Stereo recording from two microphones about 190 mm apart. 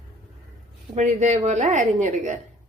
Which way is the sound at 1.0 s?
35° right (ahead or behind).